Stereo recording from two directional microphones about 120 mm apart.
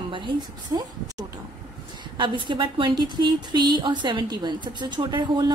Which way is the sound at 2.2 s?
40° right (ahead or behind).